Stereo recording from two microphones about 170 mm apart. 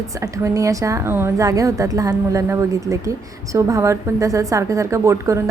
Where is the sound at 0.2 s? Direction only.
20° right (ahead or behind).